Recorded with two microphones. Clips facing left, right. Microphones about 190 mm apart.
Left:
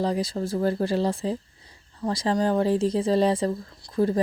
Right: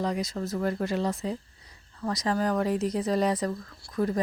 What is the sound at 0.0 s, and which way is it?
Speech, 30° left (ahead or behind).